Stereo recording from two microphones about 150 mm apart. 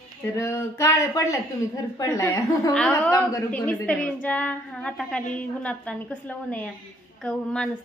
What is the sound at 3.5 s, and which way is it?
A woman's voice, 10° left (ahead or behind).